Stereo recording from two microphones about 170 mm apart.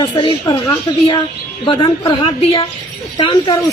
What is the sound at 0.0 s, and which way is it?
Speech, 25° left (ahead or behind).